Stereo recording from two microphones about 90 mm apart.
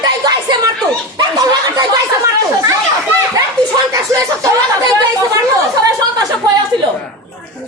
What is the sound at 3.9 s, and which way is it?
Speech, 35° right (ahead or behind).